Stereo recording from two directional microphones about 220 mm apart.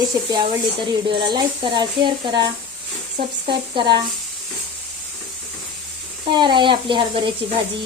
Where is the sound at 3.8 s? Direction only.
20° right (ahead or behind).